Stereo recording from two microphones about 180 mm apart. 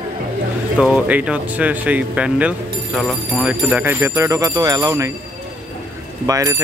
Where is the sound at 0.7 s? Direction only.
5° right (ahead or behind).